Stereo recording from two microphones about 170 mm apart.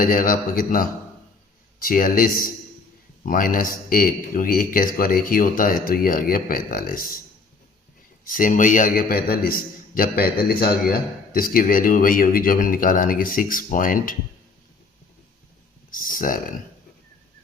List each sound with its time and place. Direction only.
0.0 s a man's voice: 55° left (ahead or behind)
8.2 s a man's voice: 55° left (ahead or behind)
15.9 s a sound: 55° left (ahead or behind)